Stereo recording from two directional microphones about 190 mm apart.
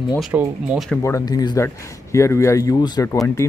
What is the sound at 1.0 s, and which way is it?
Speech, 15° left (ahead or behind).